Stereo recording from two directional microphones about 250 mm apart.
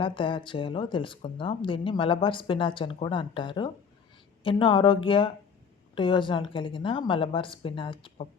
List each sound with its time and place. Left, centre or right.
0.0 s speech: centre